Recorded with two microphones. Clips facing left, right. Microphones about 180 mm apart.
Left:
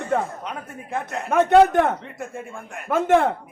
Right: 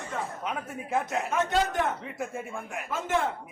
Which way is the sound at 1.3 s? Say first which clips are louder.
Left 13 dB; 60° left (ahead or behind).